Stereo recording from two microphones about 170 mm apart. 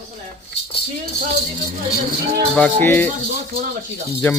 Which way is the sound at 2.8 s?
10° left (ahead or behind).